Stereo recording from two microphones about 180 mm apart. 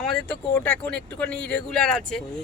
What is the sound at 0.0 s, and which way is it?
Speech, centre (ahead or behind).